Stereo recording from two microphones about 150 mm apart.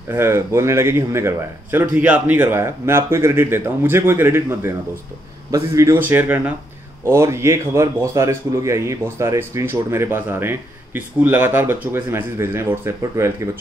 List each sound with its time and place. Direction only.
0.1 s a man's voice: 15° right (ahead or behind)